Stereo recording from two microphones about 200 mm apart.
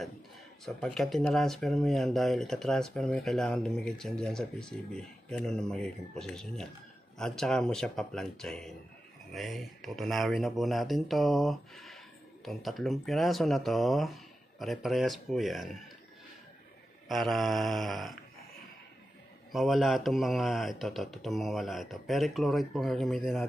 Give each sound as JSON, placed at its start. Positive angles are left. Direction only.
{"t": 0.7, "sound": "speech", "side_deg": 0}
{"t": 17.1, "sound": "speech", "side_deg": 0}
{"t": 19.5, "sound": "speech", "side_deg": 0}